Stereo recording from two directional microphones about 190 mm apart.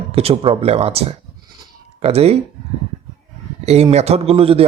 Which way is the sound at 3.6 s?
35° right (ahead or behind).